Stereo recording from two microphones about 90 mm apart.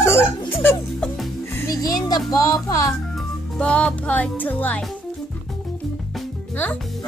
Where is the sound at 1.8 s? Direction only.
45° left (ahead or behind).